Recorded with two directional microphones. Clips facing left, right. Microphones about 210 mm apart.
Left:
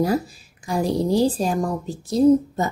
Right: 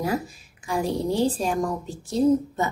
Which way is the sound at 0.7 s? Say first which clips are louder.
Left 4 dB; 40° left (ahead or behind).